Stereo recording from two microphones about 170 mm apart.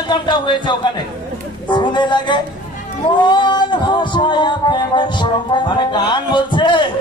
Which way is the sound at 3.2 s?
25° left (ahead or behind).